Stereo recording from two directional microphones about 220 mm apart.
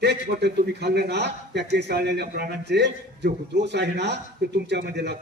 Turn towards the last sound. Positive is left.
turn(degrees=-50)  # may be behind; listen again after turning